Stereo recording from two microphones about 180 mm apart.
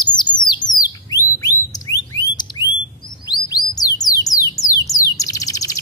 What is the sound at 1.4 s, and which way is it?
Alarm, 20° left (ahead or behind).